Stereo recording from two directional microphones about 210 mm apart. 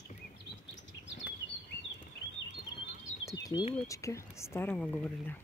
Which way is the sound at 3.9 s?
15° left (ahead or behind).